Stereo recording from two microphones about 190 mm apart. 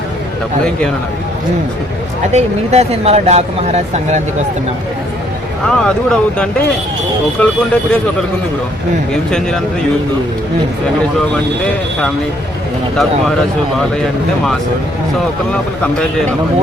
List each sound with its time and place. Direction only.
2.3 s speech: 35° right (ahead or behind)
5.7 s speech: 5° left (ahead or behind)
15.8 s speech: 5° left (ahead or behind)